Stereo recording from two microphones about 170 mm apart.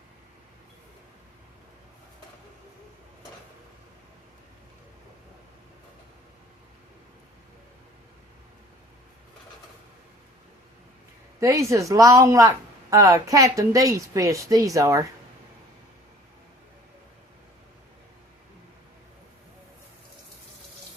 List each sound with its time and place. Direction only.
11.3 s a woman's voice: 20° right (ahead or behind)